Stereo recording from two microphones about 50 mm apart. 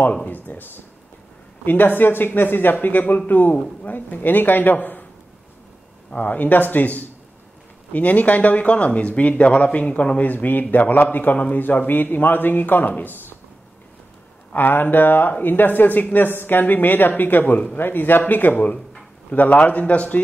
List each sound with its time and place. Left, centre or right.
0.1 s speech: left
6.2 s speech: left
14.5 s speech: left